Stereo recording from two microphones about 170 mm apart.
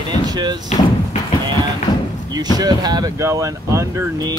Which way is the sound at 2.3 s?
25° right (ahead or behind).